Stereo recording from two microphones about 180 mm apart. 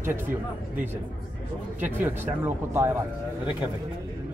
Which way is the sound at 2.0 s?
10° right (ahead or behind).